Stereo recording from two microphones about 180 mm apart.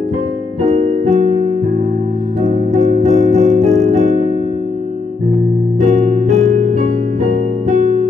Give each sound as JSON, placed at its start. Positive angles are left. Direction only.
{"t": 0.6, "sound": "music", "side_deg": -40}
{"t": 3.3, "sound": "piano", "side_deg": -40}
{"t": 5.8, "sound": "electric piano", "side_deg": -40}